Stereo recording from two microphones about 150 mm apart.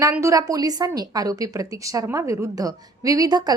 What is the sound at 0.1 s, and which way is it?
A woman's voice, 20° right (ahead or behind).